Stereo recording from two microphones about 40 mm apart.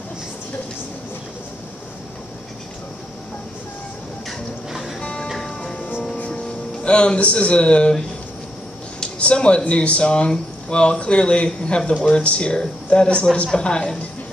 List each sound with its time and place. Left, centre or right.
6.1 s music: left
9.2 s speech: left